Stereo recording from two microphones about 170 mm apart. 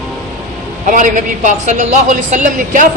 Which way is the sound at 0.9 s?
50° right (ahead or behind).